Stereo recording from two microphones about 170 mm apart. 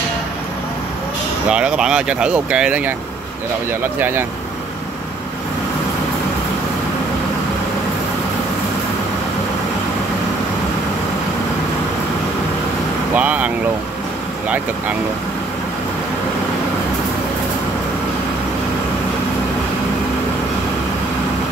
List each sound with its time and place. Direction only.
1.5 s speech: 5° right (ahead or behind)
4.0 s speech: 10° right (ahead or behind)
13.1 s vehicle: 10° right (ahead or behind)